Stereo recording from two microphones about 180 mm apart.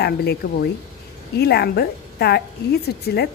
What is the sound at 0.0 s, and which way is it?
A woman's voice, 60° left (ahead or behind).